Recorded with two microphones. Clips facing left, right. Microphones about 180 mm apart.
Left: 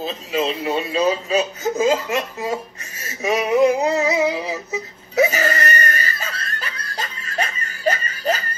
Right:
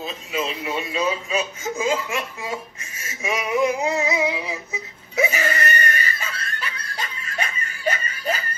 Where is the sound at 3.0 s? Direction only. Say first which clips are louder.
Left 6 dB; 35° left (ahead or behind).